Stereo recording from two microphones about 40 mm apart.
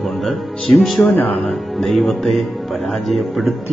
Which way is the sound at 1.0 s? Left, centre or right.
Left.